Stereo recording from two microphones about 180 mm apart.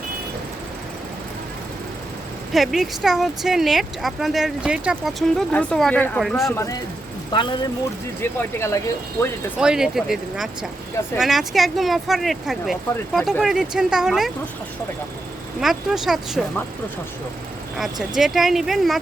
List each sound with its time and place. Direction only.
2.5 s speech: centre (ahead or behind)
7.3 s speech: 25° left (ahead or behind)
8.2 s speech: 15° left (ahead or behind)
9.6 s speech: 5° right (ahead or behind)
15.6 s speech: centre (ahead or behind)
18.1 s speech: centre (ahead or behind)